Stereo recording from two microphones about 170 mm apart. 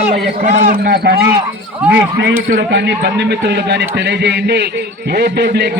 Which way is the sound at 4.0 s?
90° right.